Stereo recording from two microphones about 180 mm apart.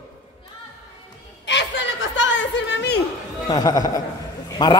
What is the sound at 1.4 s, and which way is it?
Speech, 80° left.